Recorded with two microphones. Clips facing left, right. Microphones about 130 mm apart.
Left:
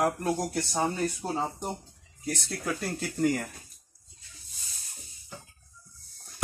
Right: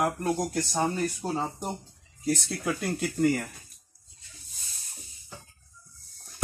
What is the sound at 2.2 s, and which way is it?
Speech, centre (ahead or behind).